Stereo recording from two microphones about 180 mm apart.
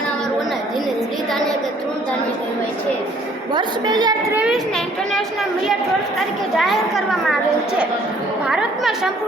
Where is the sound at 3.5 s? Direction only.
25° right (ahead or behind).